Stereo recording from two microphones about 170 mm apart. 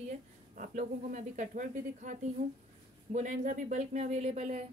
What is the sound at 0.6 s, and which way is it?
A woman's voice, 45° right (ahead or behind).